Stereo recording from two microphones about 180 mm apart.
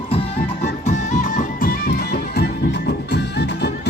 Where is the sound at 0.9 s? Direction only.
45° left (ahead or behind).